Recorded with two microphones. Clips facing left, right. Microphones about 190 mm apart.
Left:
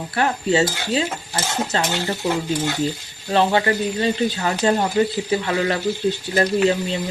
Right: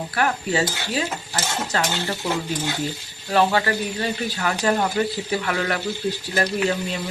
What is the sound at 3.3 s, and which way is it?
Speech, 25° left (ahead or behind).